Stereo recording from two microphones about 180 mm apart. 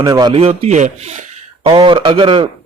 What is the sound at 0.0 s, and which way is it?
A man's voice, 25° right (ahead or behind).